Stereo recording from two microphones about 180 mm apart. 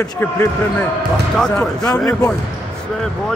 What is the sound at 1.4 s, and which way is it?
Speech, 5° left (ahead or behind).